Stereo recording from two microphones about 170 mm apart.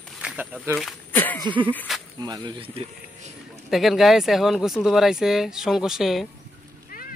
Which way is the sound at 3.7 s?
Centre (ahead or behind).